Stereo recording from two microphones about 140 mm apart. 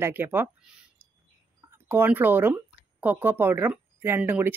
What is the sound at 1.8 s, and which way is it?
Speech, 15° right (ahead or behind).